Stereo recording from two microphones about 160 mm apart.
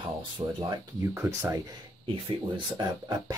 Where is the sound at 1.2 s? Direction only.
15° right (ahead or behind).